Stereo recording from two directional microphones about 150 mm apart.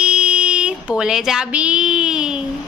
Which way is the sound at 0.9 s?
5° right (ahead or behind).